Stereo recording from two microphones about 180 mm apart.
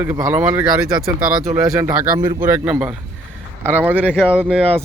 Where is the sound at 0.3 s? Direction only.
5° right (ahead or behind).